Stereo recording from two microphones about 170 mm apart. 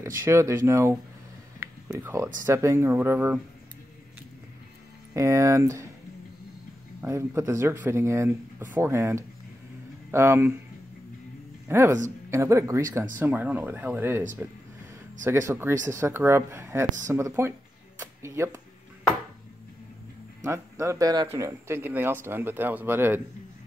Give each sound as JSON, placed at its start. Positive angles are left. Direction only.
{"t": 0.0, "sound": "speech", "side_deg": -15}
{"t": 5.1, "sound": "speech", "side_deg": -15}
{"t": 7.0, "sound": "speech", "side_deg": -15}
{"t": 11.6, "sound": "speech", "side_deg": -15}
{"t": 15.2, "sound": "speech", "side_deg": -15}
{"t": 20.4, "sound": "speech", "side_deg": -15}